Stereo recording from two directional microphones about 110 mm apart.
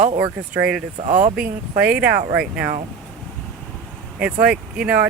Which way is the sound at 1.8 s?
10° right (ahead or behind).